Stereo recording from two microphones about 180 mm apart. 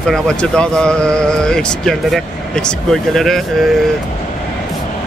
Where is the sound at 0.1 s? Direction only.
5° left (ahead or behind).